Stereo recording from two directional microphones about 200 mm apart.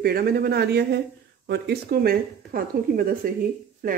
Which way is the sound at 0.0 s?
50° right (ahead or behind).